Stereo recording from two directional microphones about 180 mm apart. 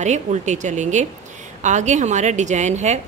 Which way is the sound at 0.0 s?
40° right (ahead or behind).